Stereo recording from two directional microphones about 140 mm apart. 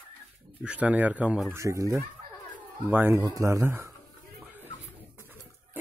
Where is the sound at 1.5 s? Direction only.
25° right (ahead or behind).